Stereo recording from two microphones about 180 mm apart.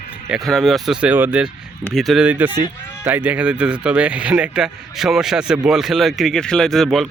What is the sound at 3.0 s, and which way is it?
Speech, 10° right (ahead or behind).